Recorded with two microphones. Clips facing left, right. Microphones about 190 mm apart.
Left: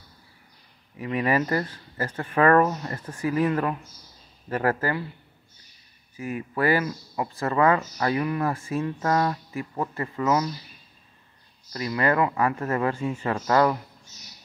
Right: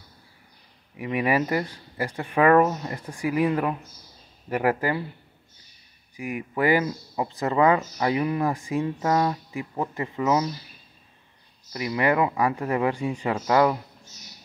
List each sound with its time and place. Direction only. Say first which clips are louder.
0.9 s speech: even; 15° right (ahead or behind)
6.1 s speech: right 1 dB; 15° right (ahead or behind)
11.7 s speech: right 1 dB; 15° right (ahead or behind)